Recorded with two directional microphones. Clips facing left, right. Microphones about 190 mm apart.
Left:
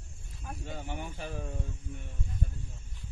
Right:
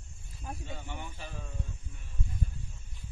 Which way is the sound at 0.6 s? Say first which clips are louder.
Left 3 dB; 50° left (ahead or behind).